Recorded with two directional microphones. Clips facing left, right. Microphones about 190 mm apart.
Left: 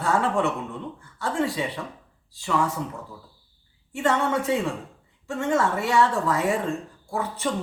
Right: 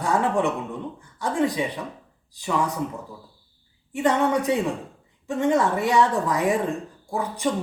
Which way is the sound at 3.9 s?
15° right (ahead or behind).